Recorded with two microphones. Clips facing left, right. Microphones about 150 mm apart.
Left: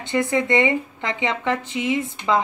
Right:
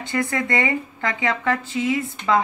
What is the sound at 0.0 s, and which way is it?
Speech, 20° left (ahead or behind).